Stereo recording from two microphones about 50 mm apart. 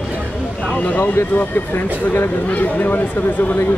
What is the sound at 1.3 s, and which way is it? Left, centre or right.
Speech, left.